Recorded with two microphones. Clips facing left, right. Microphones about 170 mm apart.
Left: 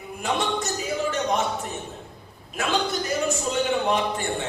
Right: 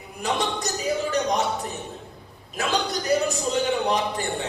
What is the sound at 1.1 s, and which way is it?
Speech, 40° right (ahead or behind).